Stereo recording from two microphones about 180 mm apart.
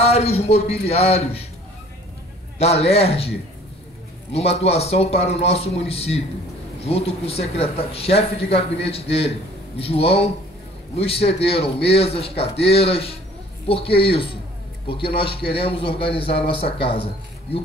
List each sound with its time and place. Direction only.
0.0 s speech: 35° left (ahead or behind)
2.6 s speech: 35° left (ahead or behind)